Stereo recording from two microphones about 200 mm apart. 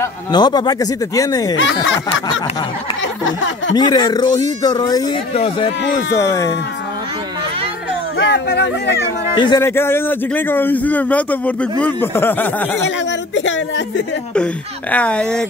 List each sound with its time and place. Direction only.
0.0 s speech: 20° left (ahead or behind)
3.3 s a sound: 70° left (ahead or behind)
3.7 s speech: 20° left (ahead or behind)
5.3 s speech: 30° left (ahead or behind)
6.1 s a man's voice: 15° left (ahead or behind)
8.2 s speech: 60° left (ahead or behind)
9.4 s a man's voice: 15° left (ahead or behind)
12.8 s a woman's voice: 65° left (ahead or behind)
14.3 s speech: 5° left (ahead or behind)